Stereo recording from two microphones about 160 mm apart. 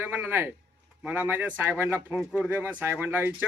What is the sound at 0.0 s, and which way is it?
A man's voice, 15° right (ahead or behind).